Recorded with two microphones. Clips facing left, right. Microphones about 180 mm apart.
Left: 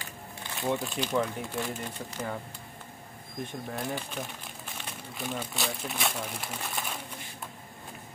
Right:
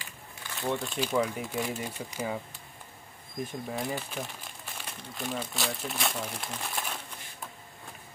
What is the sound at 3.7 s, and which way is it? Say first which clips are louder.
Speech: even; centre (ahead or behind).